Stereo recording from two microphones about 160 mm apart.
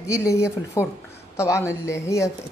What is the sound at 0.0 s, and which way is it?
A woman's voice, 20° left (ahead or behind).